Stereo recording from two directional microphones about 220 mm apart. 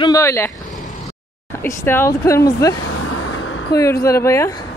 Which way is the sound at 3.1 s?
75° left (ahead or behind).